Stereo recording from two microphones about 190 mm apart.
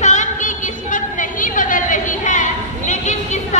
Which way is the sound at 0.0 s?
40° left (ahead or behind).